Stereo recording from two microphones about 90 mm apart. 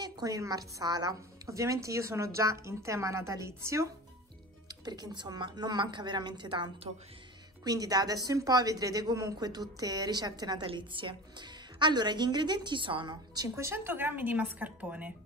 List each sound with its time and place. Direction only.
0.0 s a woman's voice: 45° right (ahead or behind)
4.8 s a woman's voice: 50° right (ahead or behind)
7.6 s a woman's voice: 45° right (ahead or behind)
10.7 s a woman's voice: 65° right (ahead or behind); by 13.5 s 50° right (ahead or behind)
13.6 s speech: 25° right (ahead or behind)